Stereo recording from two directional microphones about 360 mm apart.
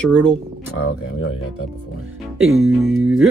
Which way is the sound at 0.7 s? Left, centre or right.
Left.